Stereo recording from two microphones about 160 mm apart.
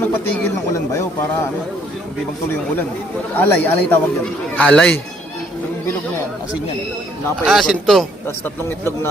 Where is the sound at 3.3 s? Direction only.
10° left (ahead or behind).